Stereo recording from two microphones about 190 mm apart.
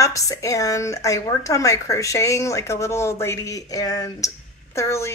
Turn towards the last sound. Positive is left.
turn(degrees=15)  # may be behind; listen again after turning